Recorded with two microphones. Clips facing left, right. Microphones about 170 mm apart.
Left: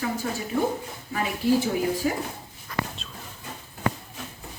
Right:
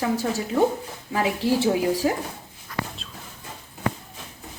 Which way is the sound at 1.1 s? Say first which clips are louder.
Right 1 dB; 90° right.